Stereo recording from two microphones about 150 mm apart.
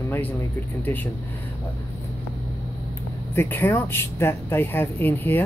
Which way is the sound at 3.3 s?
15° left (ahead or behind).